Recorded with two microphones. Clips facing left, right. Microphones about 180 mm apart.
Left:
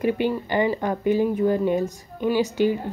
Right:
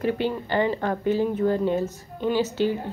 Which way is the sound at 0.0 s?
15° left (ahead or behind).